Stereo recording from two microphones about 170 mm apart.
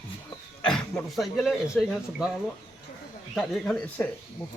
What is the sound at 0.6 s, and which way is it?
Speech, 5° left (ahead or behind).